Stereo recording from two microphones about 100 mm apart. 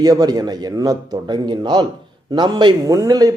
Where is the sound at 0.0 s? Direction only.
40° right (ahead or behind).